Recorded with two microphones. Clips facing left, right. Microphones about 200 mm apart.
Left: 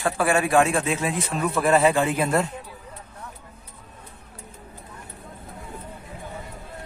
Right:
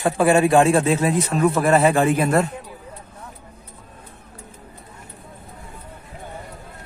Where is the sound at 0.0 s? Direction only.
25° right (ahead or behind); by 2.4 s 50° right (ahead or behind).